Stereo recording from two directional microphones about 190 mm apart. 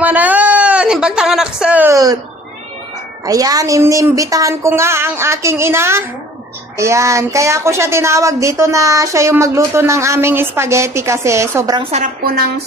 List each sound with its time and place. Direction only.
0.0 s a sound: 10° right (ahead or behind)
3.3 s speech: 20° right (ahead or behind)
11.9 s a woman's voice: 45° right (ahead or behind)